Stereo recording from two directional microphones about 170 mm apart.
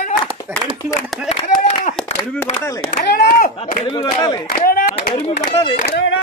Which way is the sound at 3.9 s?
25° left (ahead or behind).